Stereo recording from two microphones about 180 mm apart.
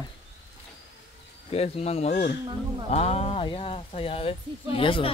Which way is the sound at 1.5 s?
35° left (ahead or behind).